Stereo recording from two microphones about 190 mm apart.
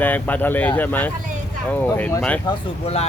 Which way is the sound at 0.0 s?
10° left (ahead or behind).